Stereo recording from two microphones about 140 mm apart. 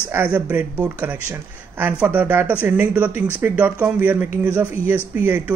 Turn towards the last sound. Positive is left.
turn(degrees=-15)  # may be behind; listen again after turning